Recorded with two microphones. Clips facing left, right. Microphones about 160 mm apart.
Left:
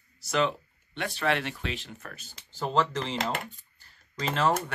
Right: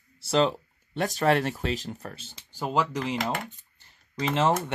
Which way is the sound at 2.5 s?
10° right (ahead or behind).